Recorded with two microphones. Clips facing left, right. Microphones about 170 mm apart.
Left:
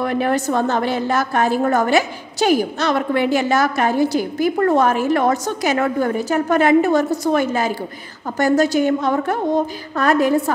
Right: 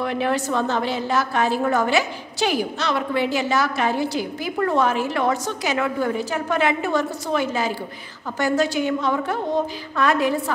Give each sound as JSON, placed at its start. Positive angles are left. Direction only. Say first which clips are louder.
{"t": 0.0, "sound": "a woman's voice", "louder": "left 4 dB", "side_deg": 50}